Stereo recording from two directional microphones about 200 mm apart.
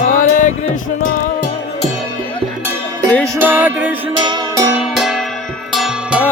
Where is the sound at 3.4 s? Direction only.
10° right (ahead or behind).